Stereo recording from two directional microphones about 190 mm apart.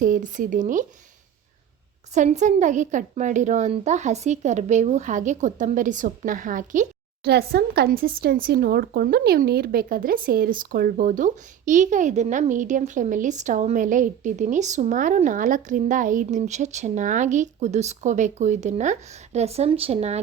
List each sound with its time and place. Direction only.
0.0 s speech: 45° right (ahead or behind)
2.1 s speech: 40° right (ahead or behind)
7.3 s speech: 55° right (ahead or behind); by 20.1 s 35° right (ahead or behind)